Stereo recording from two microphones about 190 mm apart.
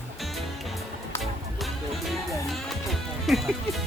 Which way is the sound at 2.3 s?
Centre (ahead or behind).